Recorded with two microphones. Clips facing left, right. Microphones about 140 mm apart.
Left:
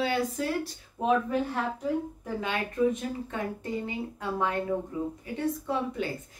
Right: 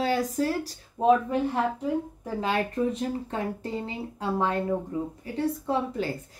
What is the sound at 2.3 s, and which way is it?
A woman's voice, 35° right (ahead or behind).